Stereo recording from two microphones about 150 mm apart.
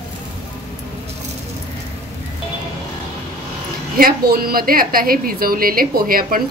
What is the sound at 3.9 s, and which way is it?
A woman's voice, 80° right.